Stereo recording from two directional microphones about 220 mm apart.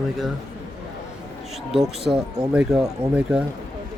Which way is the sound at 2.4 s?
5° right (ahead or behind).